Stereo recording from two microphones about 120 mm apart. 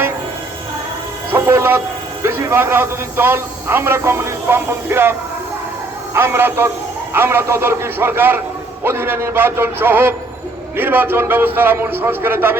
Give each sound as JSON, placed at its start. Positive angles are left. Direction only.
{"t": 1.3, "sound": "a sound", "side_deg": -20}
{"t": 2.2, "sound": "a man's voice", "side_deg": -20}
{"t": 6.1, "sound": "a man's voice", "side_deg": -20}